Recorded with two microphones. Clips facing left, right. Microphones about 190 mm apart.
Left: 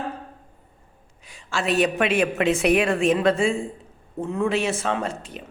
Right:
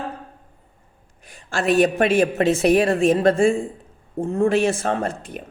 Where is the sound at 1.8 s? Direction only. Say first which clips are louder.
Right 3 dB; 45° right (ahead or behind).